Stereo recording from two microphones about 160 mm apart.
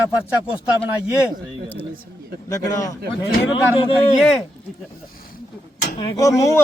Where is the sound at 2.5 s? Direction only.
20° left (ahead or behind).